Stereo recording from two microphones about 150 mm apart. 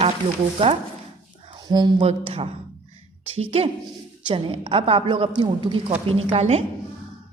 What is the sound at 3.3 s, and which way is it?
A woman's voice, 40° right (ahead or behind).